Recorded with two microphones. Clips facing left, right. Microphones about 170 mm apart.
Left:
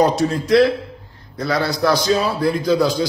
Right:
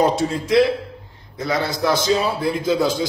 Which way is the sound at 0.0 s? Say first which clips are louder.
Left 2 dB; 25° right (ahead or behind).